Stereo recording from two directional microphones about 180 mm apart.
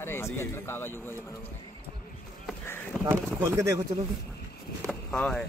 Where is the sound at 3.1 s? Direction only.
15° right (ahead or behind).